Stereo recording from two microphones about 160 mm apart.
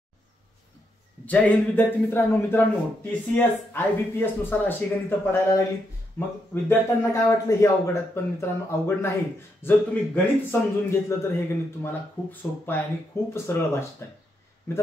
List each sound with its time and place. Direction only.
1.2 s speech: 10° left (ahead or behind)